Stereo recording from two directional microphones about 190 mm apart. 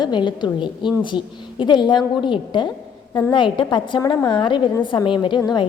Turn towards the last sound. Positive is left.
turn(degrees=25)  # may be behind; listen again after turning